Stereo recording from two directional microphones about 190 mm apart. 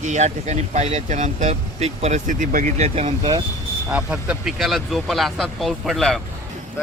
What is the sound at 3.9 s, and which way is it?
Speech, 5° right (ahead or behind).